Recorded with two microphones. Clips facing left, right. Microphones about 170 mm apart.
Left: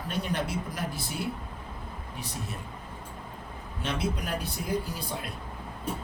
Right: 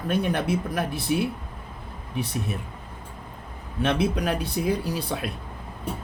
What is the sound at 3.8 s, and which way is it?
Speech, 65° right (ahead or behind).